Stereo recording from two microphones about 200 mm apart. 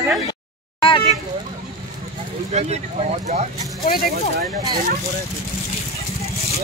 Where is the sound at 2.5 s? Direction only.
35° right (ahead or behind).